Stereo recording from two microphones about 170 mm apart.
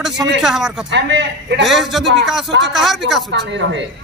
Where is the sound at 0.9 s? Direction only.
90° right.